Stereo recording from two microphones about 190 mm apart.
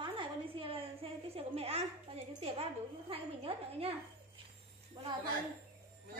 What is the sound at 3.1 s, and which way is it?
Speech, 30° right (ahead or behind).